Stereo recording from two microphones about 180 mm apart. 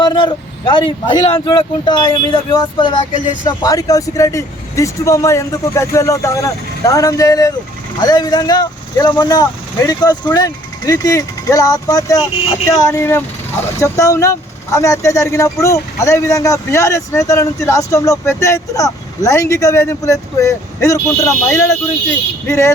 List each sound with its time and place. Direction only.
0.0 s speech: 25° left (ahead or behind)